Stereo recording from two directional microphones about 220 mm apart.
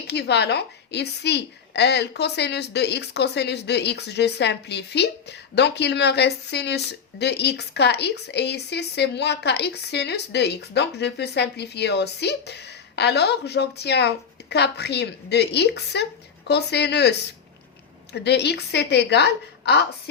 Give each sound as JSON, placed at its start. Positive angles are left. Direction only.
{"t": 0.1, "sound": "speech", "side_deg": 50}